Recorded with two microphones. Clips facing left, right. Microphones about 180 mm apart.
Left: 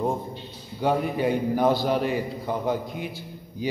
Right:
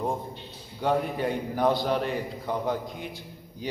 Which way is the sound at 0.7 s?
5° left (ahead or behind).